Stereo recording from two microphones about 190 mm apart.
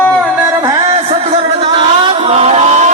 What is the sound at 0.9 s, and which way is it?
Music, 30° right (ahead or behind).